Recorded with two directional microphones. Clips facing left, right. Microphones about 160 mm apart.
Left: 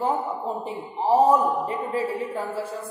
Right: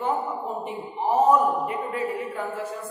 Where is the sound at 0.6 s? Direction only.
30° left (ahead or behind).